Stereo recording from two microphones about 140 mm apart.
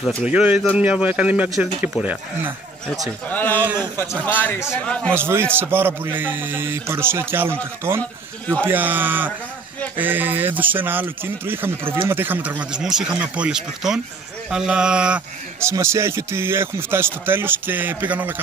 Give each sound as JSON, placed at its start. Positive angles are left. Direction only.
{"t": 0.2, "sound": "a man's voice", "side_deg": -10}
{"t": 3.3, "sound": "speech", "side_deg": 10}
{"t": 5.1, "sound": "a man's voice", "side_deg": -15}
{"t": 15.6, "sound": "a man's voice", "side_deg": -20}